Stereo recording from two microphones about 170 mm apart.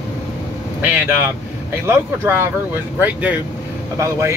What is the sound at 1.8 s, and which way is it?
Speech, 15° right (ahead or behind).